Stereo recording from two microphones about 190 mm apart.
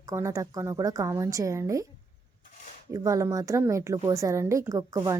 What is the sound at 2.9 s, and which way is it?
Speech, 15° right (ahead or behind).